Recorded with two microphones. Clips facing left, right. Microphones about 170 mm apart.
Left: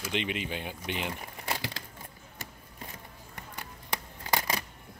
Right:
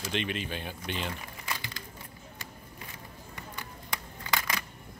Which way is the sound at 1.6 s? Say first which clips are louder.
Left 5 dB; 90° left.